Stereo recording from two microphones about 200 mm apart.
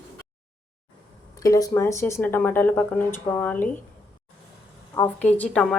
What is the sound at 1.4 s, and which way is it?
A woman's voice, 15° left (ahead or behind).